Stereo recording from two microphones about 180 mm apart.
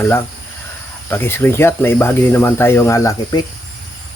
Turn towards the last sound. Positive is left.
turn(degrees=15)  # may be behind; listen again after turning